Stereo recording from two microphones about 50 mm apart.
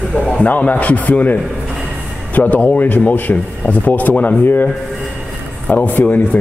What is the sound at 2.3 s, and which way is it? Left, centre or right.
Speech, left.